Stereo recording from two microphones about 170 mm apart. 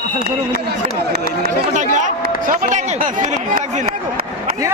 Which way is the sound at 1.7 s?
45° right (ahead or behind).